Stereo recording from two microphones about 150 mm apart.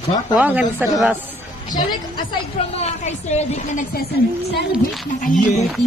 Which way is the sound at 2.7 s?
45° left (ahead or behind).